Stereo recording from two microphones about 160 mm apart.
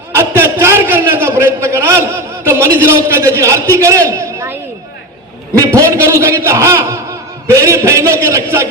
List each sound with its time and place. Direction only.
0.1 s a sound: 15° right (ahead or behind)
2.5 s a man's voice: 15° right (ahead or behind)
5.5 s a man's voice: 20° right (ahead or behind)